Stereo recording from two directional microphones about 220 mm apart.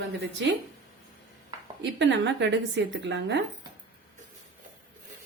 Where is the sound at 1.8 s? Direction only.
55° right (ahead or behind).